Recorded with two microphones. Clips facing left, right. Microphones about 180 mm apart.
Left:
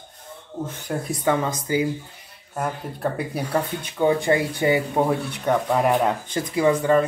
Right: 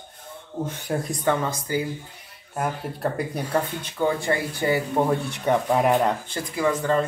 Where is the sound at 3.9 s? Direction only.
20° left (ahead or behind).